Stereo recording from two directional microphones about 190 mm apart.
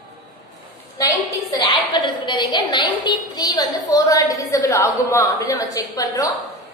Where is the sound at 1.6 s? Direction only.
25° left (ahead or behind).